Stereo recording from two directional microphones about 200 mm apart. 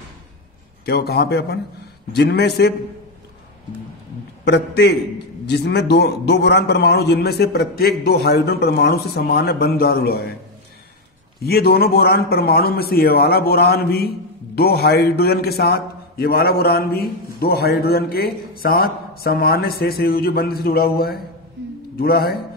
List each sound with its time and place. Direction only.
0.8 s a man's voice: 50° left (ahead or behind)
4.5 s a man's voice: 55° left (ahead or behind)
11.4 s a man's voice: 50° left (ahead or behind)